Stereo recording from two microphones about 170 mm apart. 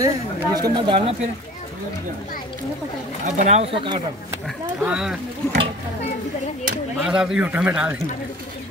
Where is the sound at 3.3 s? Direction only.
45° right (ahead or behind).